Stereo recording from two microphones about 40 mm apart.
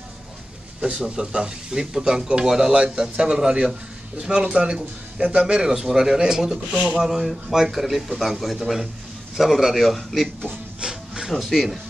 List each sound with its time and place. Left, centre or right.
0.7 s a man's voice: right
6.7 s speech: right
7.0 s a man's voice: centre
10.8 s a sound: centre
11.3 s a man's voice: centre